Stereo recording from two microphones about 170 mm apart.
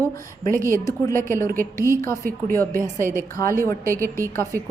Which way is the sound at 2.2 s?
55° right (ahead or behind).